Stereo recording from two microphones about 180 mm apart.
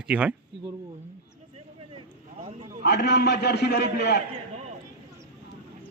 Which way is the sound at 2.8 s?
70° left (ahead or behind).